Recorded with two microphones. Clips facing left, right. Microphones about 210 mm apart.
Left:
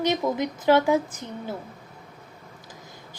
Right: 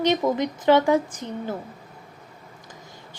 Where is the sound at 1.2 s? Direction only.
20° right (ahead or behind).